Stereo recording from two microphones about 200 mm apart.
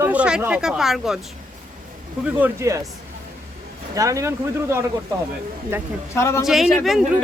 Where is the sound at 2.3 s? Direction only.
10° right (ahead or behind).